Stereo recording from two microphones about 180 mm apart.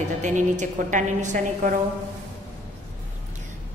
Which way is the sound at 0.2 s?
45° right (ahead or behind).